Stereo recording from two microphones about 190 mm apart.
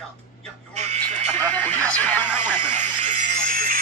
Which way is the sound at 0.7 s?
35° right (ahead or behind).